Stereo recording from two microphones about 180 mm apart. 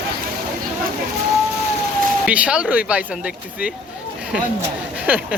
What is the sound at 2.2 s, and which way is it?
Speech, 5° right (ahead or behind).